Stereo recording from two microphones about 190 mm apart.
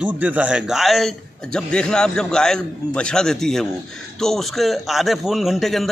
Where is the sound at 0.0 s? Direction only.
10° right (ahead or behind).